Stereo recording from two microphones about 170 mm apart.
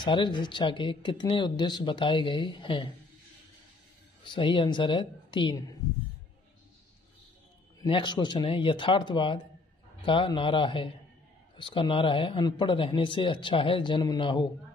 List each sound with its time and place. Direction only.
0.0 s speech: 25° left (ahead or behind)
4.2 s speech: 30° left (ahead or behind)
7.8 s speech: 25° left (ahead or behind)